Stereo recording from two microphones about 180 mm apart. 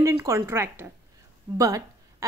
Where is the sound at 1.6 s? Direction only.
20° right (ahead or behind).